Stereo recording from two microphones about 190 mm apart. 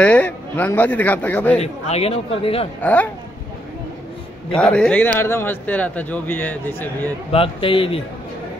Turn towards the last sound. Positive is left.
turn(degrees=30)  # may be behind; listen again after turning